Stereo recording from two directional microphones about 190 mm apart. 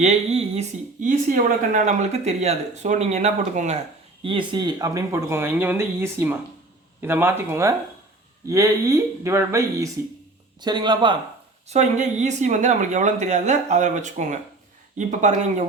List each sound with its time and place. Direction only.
0.0 s a man's voice: 35° right (ahead or behind)
11.7 s speech: 35° right (ahead or behind)